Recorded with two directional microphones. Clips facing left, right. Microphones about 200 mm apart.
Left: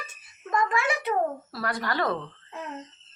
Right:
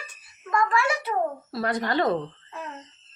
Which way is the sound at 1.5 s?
20° right (ahead or behind).